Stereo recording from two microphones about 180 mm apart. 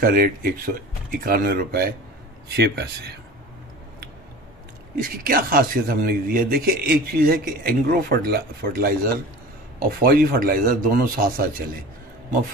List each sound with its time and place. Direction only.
0.0 s speech: 55° right (ahead or behind)
5.1 s speech: 55° right (ahead or behind)